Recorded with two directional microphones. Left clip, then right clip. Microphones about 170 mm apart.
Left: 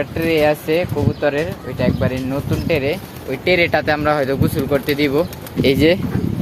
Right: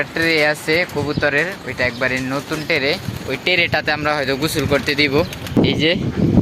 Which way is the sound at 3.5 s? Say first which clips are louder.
Left 2 dB; 5° left (ahead or behind).